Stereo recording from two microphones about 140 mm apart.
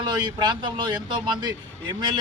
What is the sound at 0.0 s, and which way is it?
Speech, 30° right (ahead or behind).